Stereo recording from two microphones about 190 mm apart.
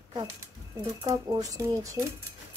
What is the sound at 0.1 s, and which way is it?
Speech, 20° right (ahead or behind).